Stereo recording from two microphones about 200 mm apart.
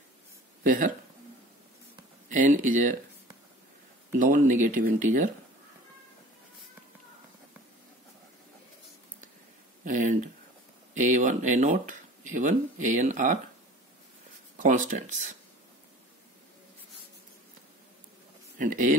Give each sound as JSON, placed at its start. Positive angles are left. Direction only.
{"t": 0.7, "sound": "speech", "side_deg": -40}
{"t": 2.2, "sound": "speech", "side_deg": -40}
{"t": 4.2, "sound": "speech", "side_deg": -40}
{"t": 9.8, "sound": "speech", "side_deg": -40}
{"t": 14.6, "sound": "speech", "side_deg": -40}
{"t": 18.6, "sound": "speech", "side_deg": -40}